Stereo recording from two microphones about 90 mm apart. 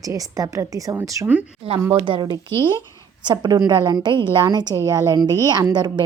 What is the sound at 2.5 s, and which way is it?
Speech, 30° left (ahead or behind).